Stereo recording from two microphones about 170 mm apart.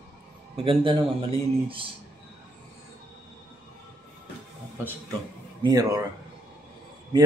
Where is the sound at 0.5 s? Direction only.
30° right (ahead or behind).